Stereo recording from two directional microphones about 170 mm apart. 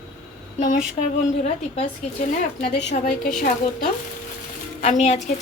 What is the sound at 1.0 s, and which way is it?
Speech, 45° left (ahead or behind).